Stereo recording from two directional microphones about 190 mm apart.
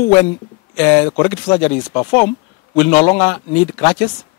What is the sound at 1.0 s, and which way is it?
Speech, 20° left (ahead or behind).